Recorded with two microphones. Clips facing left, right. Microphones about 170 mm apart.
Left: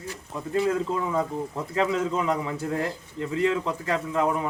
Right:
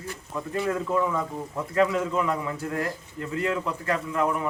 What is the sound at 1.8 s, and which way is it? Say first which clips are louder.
A man's voice: right 1 dB; 25° left (ahead or behind).